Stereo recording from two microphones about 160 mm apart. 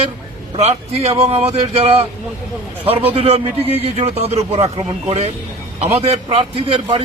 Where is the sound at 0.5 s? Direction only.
40° right (ahead or behind).